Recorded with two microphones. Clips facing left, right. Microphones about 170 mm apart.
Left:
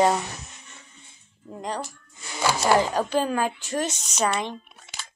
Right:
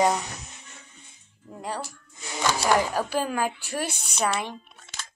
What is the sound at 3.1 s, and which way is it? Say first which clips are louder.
A woman's voice: left 3 dB; 10° right (ahead or behind).